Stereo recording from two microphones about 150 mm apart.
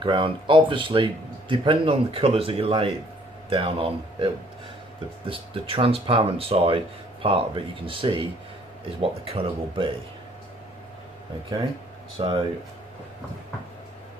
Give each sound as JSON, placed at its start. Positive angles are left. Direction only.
{"t": 0.0, "sound": "speech", "side_deg": -35}
{"t": 12.2, "sound": "speech", "side_deg": -35}